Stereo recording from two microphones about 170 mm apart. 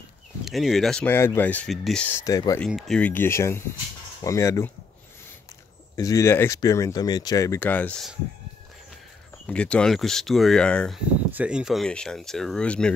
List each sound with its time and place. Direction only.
0.5 s speech: centre (ahead or behind); by 2.6 s 20° left (ahead or behind)
2.6 s speech: centre (ahead or behind); by 4.6 s 20° left (ahead or behind)
5.9 s speech: 20° left (ahead or behind)
9.5 s speech: 5° left (ahead or behind)
11.3 s speech: 5° right (ahead or behind)